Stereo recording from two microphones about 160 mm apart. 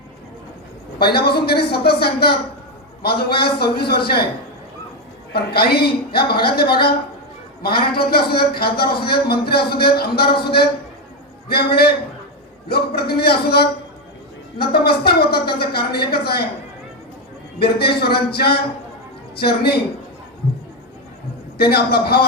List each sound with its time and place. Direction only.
0.9 s a woman's voice: 80° left
5.3 s speech: 80° left
7.9 s a woman's voice: 75° left (ahead or behind)
17.6 s a woman's voice: 80° left
21.6 s a woman's voice: 80° left